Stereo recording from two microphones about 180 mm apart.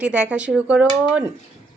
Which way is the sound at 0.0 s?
5° right (ahead or behind).